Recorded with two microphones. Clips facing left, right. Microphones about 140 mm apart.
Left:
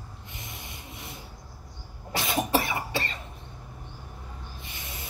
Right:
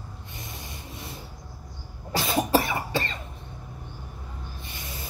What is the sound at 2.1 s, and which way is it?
Cough, 25° right (ahead or behind).